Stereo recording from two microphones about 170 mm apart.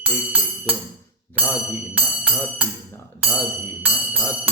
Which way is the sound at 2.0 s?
5° right (ahead or behind).